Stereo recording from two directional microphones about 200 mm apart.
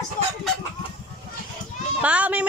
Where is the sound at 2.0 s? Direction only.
5° right (ahead or behind).